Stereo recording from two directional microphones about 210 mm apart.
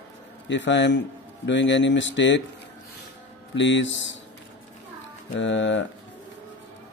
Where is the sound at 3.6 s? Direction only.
60° left (ahead or behind).